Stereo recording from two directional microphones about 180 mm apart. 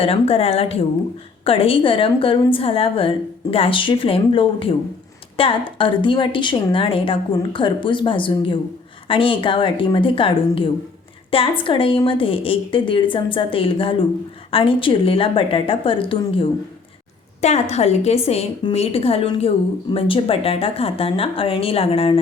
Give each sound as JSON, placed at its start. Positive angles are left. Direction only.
{"t": 0.0, "sound": "a woman's voice", "side_deg": 30}